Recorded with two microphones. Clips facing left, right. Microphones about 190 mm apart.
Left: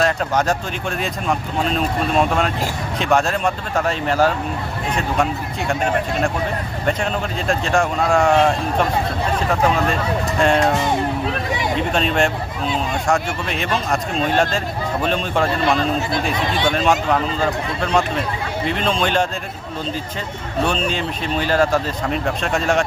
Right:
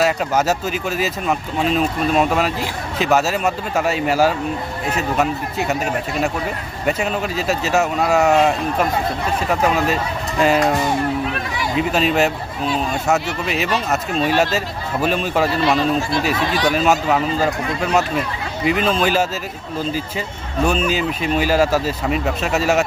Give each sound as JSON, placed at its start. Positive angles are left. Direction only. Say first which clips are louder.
{"t": 0.0, "sound": "speech", "louder": "right 1 dB", "side_deg": -5}
{"t": 11.3, "sound": "a sound", "louder": "left 2 dB", "side_deg": 20}
{"t": 11.8, "sound": "speech", "louder": "right 3 dB", "side_deg": -5}
{"t": 16.6, "sound": "speech", "louder": "right 1 dB", "side_deg": -5}
{"t": 20.7, "sound": "speech", "louder": "right 5 dB", "side_deg": -5}